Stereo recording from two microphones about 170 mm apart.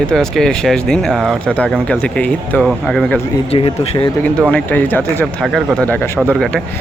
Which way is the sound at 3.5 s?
35° left (ahead or behind).